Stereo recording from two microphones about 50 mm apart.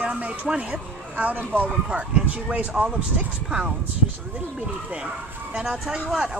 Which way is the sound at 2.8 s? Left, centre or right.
Centre.